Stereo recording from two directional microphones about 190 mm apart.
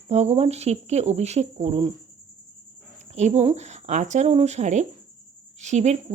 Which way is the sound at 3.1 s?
35° right (ahead or behind).